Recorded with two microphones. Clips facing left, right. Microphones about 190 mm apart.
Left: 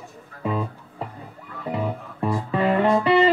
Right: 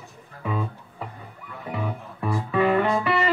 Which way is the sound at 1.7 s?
30° left (ahead or behind).